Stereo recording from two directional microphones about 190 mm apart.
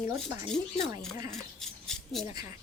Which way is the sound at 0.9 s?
15° right (ahead or behind).